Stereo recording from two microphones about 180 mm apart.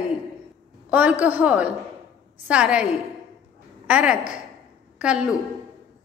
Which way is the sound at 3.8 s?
5° right (ahead or behind).